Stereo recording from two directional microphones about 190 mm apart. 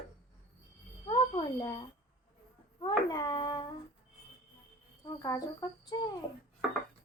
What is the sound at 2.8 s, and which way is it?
Speech, 20° left (ahead or behind).